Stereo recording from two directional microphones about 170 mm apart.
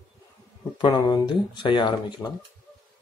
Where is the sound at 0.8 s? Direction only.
25° left (ahead or behind).